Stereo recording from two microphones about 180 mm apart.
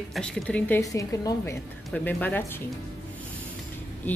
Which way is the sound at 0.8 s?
20° left (ahead or behind).